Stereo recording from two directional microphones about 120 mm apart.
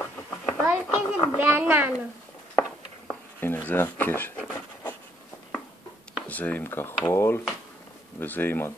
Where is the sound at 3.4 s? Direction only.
15° left (ahead or behind).